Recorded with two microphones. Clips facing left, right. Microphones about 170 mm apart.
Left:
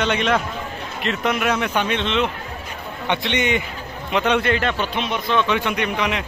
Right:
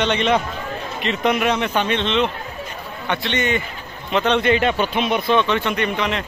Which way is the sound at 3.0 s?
20° left (ahead or behind).